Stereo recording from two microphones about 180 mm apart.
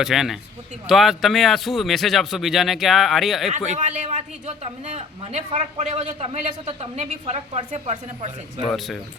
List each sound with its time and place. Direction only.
0.0 s speech: centre (ahead or behind)
3.8 s a woman's voice: 40° right (ahead or behind)
8.6 s speech: centre (ahead or behind)